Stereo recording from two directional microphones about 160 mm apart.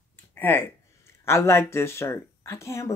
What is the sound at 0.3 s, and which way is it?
Speech, 10° left (ahead or behind).